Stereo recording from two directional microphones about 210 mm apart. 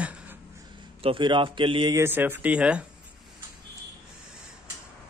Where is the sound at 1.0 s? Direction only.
25° right (ahead or behind); by 2.8 s 5° right (ahead or behind).